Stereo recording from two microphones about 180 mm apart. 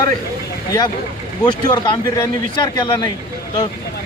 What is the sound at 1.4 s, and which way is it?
Speech, 25° left (ahead or behind).